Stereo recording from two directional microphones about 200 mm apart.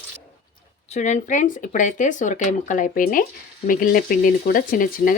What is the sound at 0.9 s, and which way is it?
Speech, 35° left (ahead or behind).